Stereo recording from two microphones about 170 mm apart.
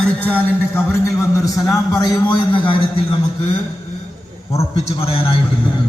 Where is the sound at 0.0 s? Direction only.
10° left (ahead or behind).